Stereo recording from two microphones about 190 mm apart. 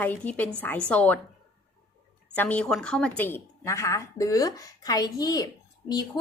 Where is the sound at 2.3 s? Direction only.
10° left (ahead or behind).